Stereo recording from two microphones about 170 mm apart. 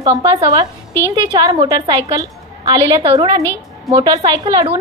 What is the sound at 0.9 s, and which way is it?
Speech, 15° left (ahead or behind).